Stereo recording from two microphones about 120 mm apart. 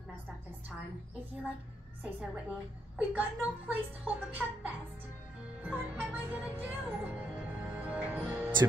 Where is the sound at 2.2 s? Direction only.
10° right (ahead or behind).